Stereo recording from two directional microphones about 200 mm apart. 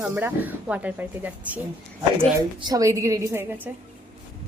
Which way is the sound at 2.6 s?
20° right (ahead or behind).